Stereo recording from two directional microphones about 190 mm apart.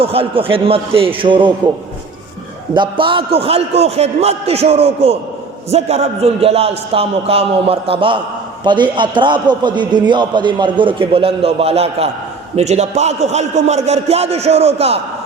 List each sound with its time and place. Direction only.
0.0 s a man's voice: 30° right (ahead or behind)
2.7 s a man's voice: 25° right (ahead or behind)